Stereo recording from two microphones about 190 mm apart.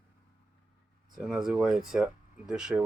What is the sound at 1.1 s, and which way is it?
Speech, centre (ahead or behind).